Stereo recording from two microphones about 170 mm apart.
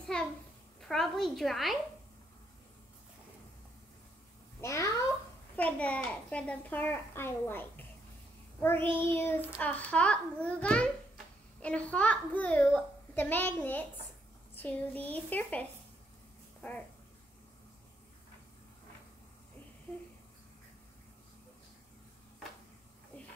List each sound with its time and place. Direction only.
0.0 s a sound: 5° left (ahead or behind)
0.7 s a woman's voice: centre (ahead or behind)
4.6 s a child's voice: 15° left (ahead or behind)